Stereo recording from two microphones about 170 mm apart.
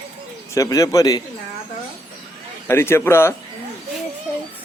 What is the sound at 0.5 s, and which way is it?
Speech, 20° left (ahead or behind).